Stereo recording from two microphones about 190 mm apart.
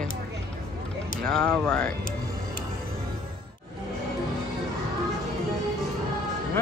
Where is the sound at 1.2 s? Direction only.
5° left (ahead or behind).